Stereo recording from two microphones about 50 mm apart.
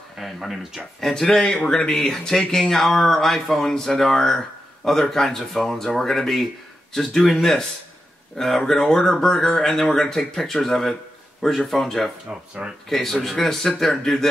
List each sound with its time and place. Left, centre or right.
0.2 s speech: centre
1.0 s speech: centre
12.3 s speech: right
12.9 s speech: centre